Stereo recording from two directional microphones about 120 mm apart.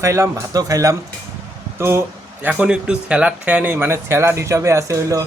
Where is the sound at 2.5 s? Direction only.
10° right (ahead or behind); by 5.2 s 25° right (ahead or behind).